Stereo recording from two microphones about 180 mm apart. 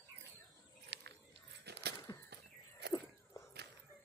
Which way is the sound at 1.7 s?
65° right (ahead or behind).